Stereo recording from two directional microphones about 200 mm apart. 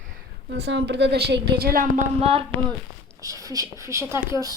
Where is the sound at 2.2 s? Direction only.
30° right (ahead or behind).